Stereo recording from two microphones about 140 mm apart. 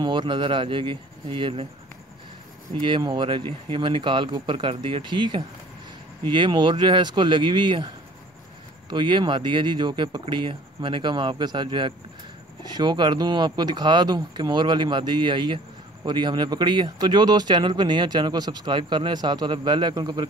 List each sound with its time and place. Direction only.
0.0 s speech: 35° right (ahead or behind)
2.7 s speech: 35° right (ahead or behind)
8.9 s speech: 35° right (ahead or behind)